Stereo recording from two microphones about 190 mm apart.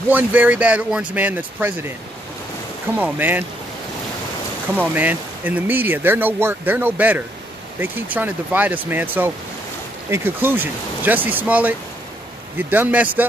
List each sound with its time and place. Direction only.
0.1 s speech: 10° right (ahead or behind)
2.9 s speech: 10° right (ahead or behind)
4.7 s speech: 10° right (ahead or behind)